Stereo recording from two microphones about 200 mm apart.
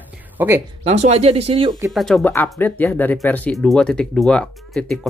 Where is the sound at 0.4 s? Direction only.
10° right (ahead or behind).